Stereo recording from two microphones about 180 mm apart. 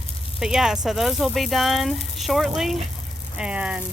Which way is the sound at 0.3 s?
5° right (ahead or behind).